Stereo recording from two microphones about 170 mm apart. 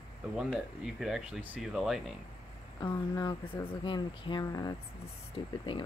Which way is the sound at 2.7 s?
20° left (ahead or behind).